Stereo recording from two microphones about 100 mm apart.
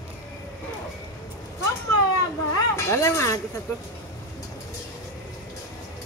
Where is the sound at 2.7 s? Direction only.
30° left (ahead or behind).